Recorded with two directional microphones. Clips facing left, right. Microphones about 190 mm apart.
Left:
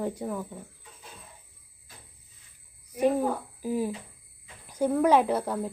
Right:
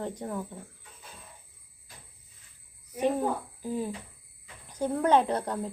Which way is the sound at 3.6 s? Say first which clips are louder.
Left 7 dB; 10° left (ahead or behind).